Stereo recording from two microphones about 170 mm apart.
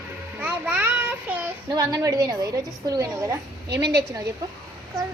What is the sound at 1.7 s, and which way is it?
A woman's voice, 20° right (ahead or behind).